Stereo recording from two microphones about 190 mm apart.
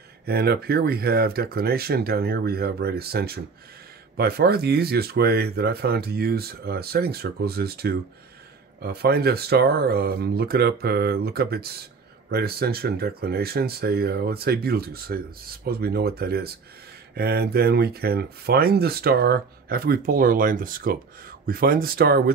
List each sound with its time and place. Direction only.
0.2 s speech: 55° right (ahead or behind)